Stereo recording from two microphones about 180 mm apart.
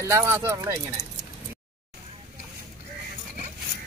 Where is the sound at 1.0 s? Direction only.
15° left (ahead or behind).